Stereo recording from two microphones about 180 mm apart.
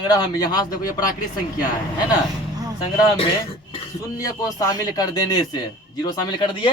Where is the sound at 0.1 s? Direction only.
20° left (ahead or behind).